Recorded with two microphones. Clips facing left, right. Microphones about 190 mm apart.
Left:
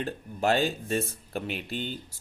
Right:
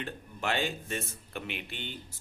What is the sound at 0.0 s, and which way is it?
Speech, 40° left (ahead or behind).